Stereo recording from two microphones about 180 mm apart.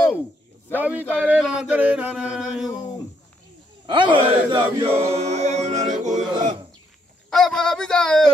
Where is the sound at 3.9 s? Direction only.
25° right (ahead or behind).